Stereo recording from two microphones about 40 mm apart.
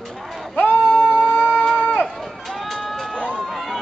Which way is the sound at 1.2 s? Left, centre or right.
Left.